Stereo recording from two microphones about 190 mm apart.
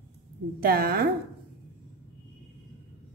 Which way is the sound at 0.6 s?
50° right (ahead or behind).